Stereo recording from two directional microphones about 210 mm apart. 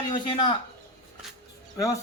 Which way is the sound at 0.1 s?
20° left (ahead or behind).